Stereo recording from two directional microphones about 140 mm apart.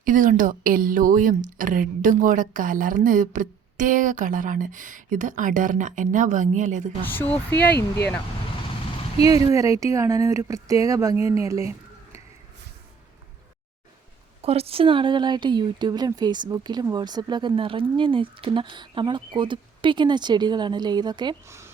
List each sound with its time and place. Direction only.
0.0 s a woman's voice: 70° right (ahead or behind)
7.0 s speech: 15° left (ahead or behind)
9.3 s speech: 25° right (ahead or behind)
14.4 s speech: 45° right (ahead or behind)
21.4 s a woman's voice: 20° right (ahead or behind)